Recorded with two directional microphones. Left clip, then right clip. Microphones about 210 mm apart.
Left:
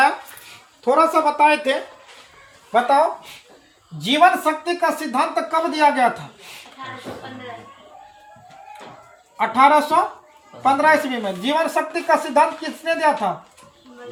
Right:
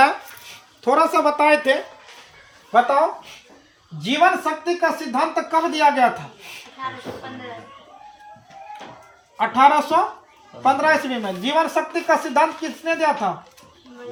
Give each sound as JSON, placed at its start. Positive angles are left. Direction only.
{"t": 0.9, "sound": "a woman's voice", "side_deg": -40}
{"t": 2.7, "sound": "a woman's voice", "side_deg": -15}
{"t": 4.0, "sound": "a woman's voice", "side_deg": -5}
{"t": 9.4, "sound": "a woman's voice", "side_deg": -15}